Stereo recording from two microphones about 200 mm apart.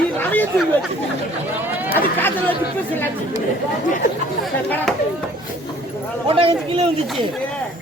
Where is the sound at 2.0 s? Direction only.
10° left (ahead or behind).